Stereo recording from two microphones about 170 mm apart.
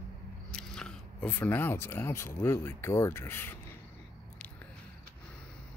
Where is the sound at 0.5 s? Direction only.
5° left (ahead or behind).